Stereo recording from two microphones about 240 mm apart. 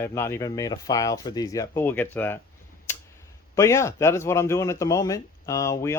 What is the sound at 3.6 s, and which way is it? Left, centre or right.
Speech, centre.